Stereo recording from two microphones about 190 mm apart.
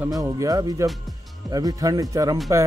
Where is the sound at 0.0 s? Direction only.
15° right (ahead or behind).